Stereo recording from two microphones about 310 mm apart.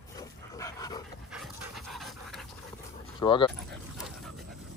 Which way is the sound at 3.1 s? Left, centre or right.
Centre.